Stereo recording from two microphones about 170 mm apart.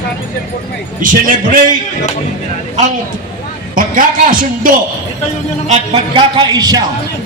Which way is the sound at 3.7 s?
55° right (ahead or behind).